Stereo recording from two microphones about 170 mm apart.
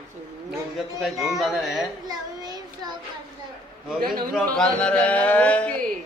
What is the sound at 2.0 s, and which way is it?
Child singing, 25° right (ahead or behind).